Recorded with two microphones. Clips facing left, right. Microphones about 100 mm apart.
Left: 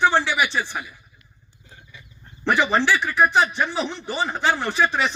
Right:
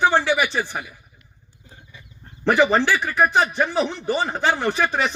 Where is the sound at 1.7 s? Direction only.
40° right (ahead or behind).